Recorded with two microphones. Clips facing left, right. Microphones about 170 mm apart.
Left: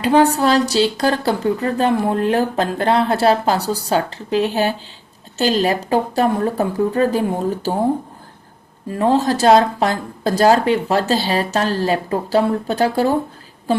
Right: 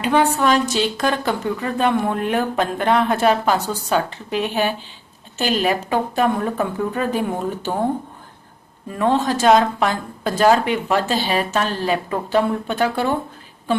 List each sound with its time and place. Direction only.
0.0 s a woman's voice: 35° left (ahead or behind)
5.8 s a woman's voice: 35° left (ahead or behind)
9.0 s a woman's voice: 35° left (ahead or behind)